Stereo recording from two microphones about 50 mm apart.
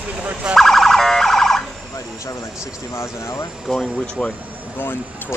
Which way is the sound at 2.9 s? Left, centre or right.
Left.